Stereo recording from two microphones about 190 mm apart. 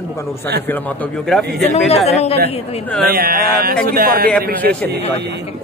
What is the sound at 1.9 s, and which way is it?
Speech, 35° left (ahead or behind).